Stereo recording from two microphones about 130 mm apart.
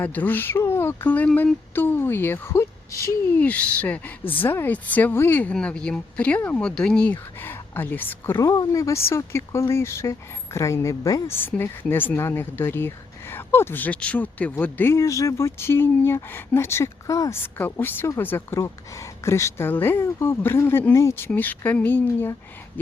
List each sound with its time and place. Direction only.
0.0 s speech: 10° left (ahead or behind)
3.4 s speech: 10° left (ahead or behind)
8.4 s speech: 25° left (ahead or behind)